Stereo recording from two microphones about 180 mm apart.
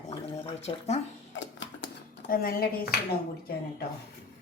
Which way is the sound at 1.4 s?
90° left.